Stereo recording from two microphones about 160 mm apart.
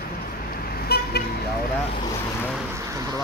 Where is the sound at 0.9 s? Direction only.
80° left.